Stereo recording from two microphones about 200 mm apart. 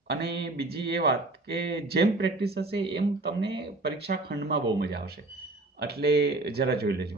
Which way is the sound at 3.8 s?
55° right (ahead or behind).